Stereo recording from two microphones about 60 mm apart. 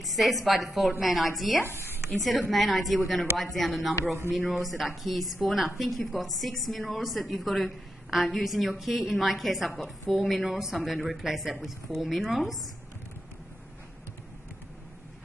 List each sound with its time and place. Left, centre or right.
0.0 s a woman's voice: centre
1.7 s speech: right
2.0 s a woman's voice: centre